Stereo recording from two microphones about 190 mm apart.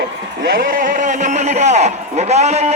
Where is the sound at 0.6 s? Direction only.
45° right (ahead or behind).